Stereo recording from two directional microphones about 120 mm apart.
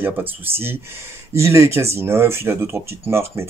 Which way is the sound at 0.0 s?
15° right (ahead or behind).